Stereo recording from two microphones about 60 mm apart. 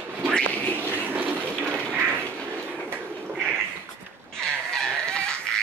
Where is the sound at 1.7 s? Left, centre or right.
Centre.